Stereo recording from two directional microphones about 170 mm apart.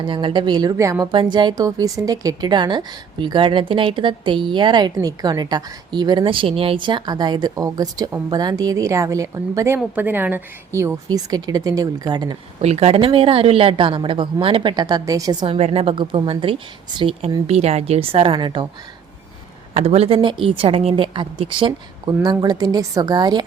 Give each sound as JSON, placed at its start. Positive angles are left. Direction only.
{"t": 0.0, "sound": "a woman's voice", "side_deg": -30}
{"t": 12.6, "sound": "speech", "side_deg": -40}
{"t": 15.5, "sound": "speech", "side_deg": -35}
{"t": 19.7, "sound": "a woman's voice", "side_deg": -35}